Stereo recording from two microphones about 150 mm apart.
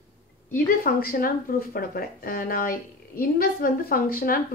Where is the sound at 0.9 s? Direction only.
75° left (ahead or behind).